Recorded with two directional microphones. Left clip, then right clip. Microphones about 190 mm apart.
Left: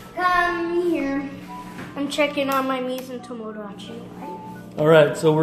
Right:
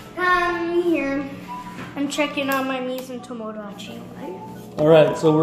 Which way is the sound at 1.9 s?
20° left (ahead or behind).